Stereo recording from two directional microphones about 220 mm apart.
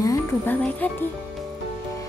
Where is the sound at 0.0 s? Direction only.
10° left (ahead or behind).